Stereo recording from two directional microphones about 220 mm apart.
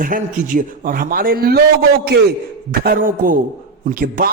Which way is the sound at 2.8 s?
40° right (ahead or behind).